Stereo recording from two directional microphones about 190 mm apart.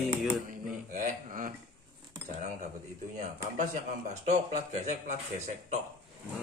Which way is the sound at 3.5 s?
40° right (ahead or behind).